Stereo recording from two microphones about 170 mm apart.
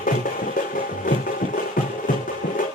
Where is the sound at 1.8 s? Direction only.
55° left (ahead or behind).